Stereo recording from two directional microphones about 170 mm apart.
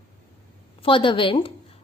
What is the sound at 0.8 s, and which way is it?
Speech, 30° left (ahead or behind).